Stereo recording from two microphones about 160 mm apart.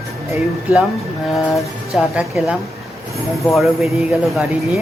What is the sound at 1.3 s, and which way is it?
Speech, centre (ahead or behind).